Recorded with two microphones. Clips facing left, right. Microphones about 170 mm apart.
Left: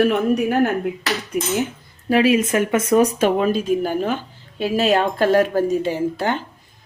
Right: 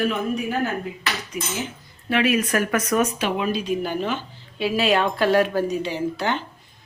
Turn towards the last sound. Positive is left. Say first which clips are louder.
# left 3 dB
turn(degrees=45)  # may be behind; listen again after turning